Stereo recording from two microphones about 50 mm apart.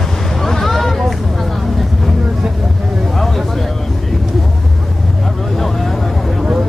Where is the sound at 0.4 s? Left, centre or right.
Centre.